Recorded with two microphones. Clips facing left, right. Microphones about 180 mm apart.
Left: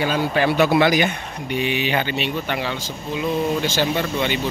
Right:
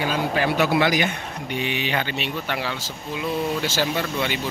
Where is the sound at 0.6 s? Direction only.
25° left (ahead or behind).